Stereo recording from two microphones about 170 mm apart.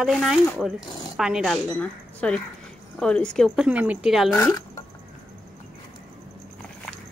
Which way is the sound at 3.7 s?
10° right (ahead or behind).